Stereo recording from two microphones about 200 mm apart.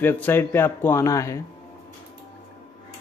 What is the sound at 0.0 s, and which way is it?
Speech, 10° left (ahead or behind).